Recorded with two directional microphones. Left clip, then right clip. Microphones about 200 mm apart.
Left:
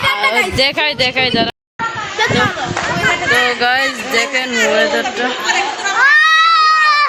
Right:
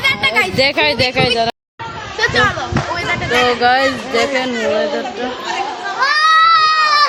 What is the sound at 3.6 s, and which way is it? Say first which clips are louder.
Speech: right 1 dB; 5° right (ahead or behind).